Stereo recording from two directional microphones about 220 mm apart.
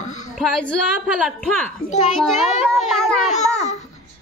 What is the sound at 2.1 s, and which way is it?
A woman's voice, centre (ahead or behind).